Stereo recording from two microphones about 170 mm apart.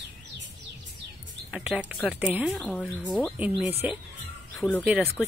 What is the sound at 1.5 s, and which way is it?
Speech, 5° right (ahead or behind).